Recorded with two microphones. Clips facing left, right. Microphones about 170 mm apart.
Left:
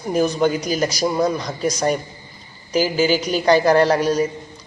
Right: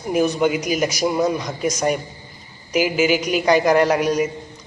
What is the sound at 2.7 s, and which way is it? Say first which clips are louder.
Speech: even; 35° left (ahead or behind).